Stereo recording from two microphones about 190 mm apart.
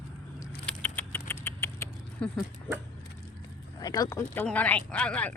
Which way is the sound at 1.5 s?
15° left (ahead or behind).